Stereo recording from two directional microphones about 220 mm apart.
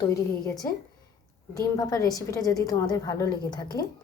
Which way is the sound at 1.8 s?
15° left (ahead or behind).